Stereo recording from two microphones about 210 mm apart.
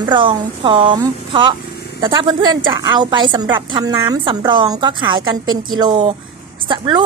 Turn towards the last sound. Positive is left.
turn(degrees=-20)  # may be behind; listen again after turning